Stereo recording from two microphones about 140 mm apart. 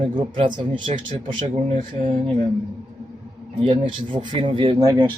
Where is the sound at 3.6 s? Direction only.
40° right (ahead or behind).